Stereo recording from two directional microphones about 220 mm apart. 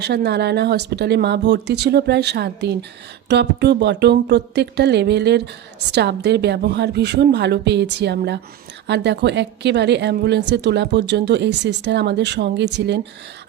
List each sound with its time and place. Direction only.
0.0 s a woman's voice: 50° right (ahead or behind)